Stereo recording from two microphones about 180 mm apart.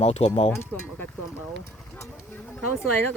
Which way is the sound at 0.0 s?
35° left (ahead or behind).